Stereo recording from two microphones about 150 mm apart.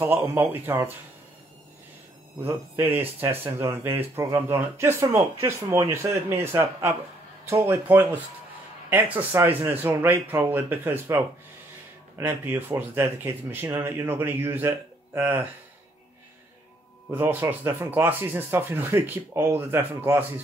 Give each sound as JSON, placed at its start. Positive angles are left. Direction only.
{"t": 0.0, "sound": "speech", "side_deg": -15}
{"t": 2.4, "sound": "speech", "side_deg": -15}
{"t": 12.2, "sound": "speech", "side_deg": -15}
{"t": 17.1, "sound": "speech", "side_deg": -15}